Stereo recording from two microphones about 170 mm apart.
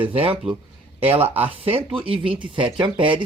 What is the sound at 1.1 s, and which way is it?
Speech, 10° right (ahead or behind).